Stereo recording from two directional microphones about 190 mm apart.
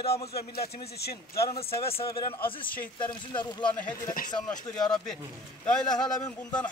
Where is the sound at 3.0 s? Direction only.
25° left (ahead or behind).